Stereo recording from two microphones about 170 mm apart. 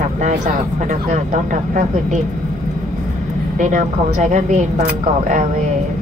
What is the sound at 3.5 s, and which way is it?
Speech, 45° right (ahead or behind).